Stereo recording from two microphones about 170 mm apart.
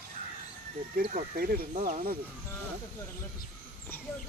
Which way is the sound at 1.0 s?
60° right (ahead or behind).